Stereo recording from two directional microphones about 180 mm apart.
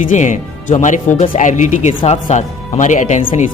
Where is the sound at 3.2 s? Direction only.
30° left (ahead or behind).